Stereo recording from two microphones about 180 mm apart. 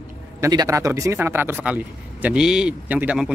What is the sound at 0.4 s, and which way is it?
Speech, 20° right (ahead or behind).